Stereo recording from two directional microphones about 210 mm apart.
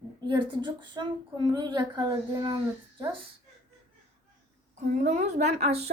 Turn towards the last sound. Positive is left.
turn(degrees=-30)  # may be behind; listen again after turning